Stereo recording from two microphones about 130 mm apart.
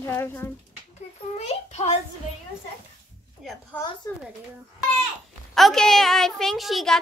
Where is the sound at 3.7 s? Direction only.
15° left (ahead or behind).